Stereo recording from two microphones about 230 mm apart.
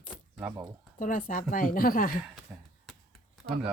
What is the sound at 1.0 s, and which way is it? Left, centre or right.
Speech, left.